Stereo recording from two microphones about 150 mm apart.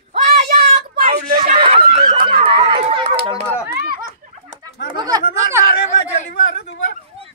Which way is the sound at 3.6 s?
90° right.